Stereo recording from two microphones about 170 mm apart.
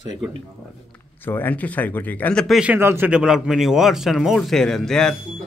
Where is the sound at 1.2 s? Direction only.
10° left (ahead or behind).